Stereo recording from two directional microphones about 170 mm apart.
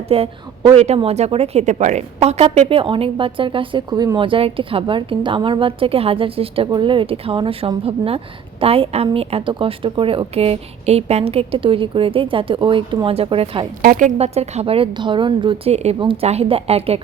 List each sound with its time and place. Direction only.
0.1 s a woman's voice: 35° right (ahead or behind)
13.8 s a woman's voice: 55° right (ahead or behind)
14.2 s a woman's voice: 40° right (ahead or behind)